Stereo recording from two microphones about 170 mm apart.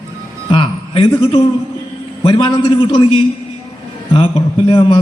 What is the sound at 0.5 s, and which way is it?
A man's voice, 30° left (ahead or behind).